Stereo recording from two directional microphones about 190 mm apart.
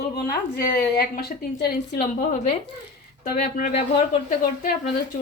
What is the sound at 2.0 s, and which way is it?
Speech, 35° left (ahead or behind).